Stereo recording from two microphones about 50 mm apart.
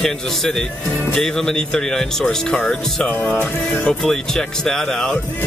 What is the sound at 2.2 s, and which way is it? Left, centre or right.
Speech, left.